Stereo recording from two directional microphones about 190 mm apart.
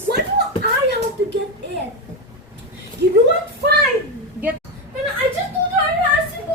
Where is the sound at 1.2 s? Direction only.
60° right (ahead or behind).